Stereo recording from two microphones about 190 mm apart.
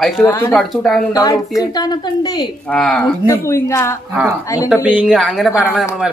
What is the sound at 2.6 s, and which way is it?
Speech, 5° left (ahead or behind).